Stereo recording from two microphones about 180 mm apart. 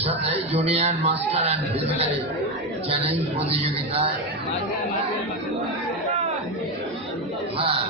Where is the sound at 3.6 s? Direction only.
30° right (ahead or behind).